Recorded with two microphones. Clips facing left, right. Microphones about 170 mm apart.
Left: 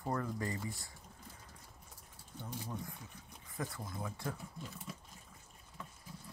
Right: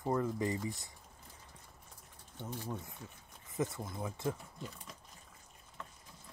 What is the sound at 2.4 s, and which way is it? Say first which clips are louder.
Speech: right 2 dB; 20° right (ahead or behind).